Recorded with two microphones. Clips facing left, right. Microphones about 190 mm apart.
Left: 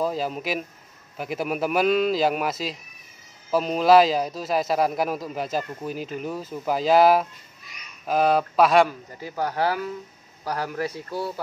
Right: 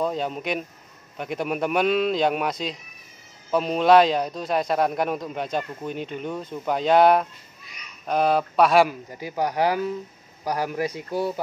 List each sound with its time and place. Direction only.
0.0 s a man's voice: 5° left (ahead or behind)
8.8 s speech: 15° right (ahead or behind)